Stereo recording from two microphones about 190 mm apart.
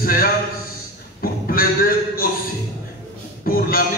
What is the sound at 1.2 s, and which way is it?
Music, 50° left (ahead or behind).